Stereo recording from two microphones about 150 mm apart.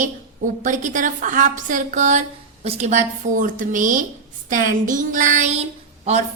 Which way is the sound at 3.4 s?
65° right (ahead or behind).